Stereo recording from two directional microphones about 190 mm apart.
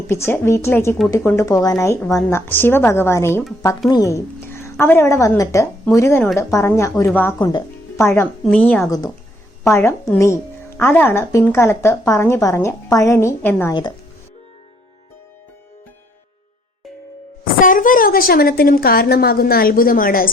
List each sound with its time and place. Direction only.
0.1 s speech: 15° left (ahead or behind)
7.3 s speech: 25° left (ahead or behind)
7.9 s speech: 15° left (ahead or behind)
17.4 s a woman's voice: 45° left (ahead or behind)